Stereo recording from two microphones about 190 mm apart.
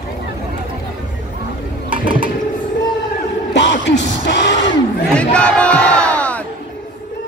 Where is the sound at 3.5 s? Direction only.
70° left (ahead or behind).